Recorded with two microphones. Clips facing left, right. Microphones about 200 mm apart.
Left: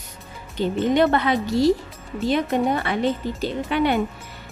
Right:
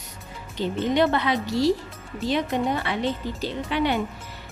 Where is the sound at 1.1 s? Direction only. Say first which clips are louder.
Left 3 dB; 50° left (ahead or behind).